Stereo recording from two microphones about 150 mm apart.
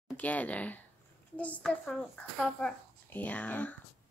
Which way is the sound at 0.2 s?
10° left (ahead or behind).